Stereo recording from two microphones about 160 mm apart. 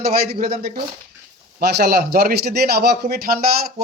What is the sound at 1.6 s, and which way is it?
A man's voice, 90° right.